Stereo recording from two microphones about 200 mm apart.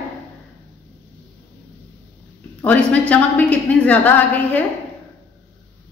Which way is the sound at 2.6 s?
5° left (ahead or behind).